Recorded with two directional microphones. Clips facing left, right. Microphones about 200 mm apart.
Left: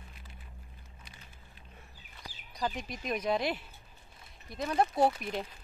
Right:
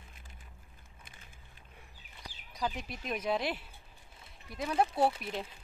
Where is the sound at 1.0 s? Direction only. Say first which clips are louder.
Left 1 dB; 50° right (ahead or behind).